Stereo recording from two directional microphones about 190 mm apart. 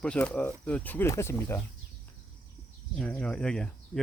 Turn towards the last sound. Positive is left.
turn(degrees=5)  # may be behind; listen again after turning